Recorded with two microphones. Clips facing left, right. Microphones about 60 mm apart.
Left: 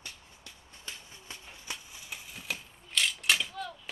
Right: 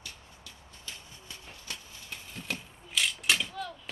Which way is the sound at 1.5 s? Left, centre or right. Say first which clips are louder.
Left 1 dB; centre.